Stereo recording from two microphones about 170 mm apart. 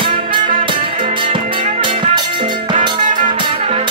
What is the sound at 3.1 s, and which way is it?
Music, 50° right (ahead or behind).